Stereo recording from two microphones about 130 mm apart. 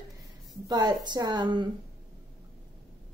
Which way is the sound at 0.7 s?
30° right (ahead or behind).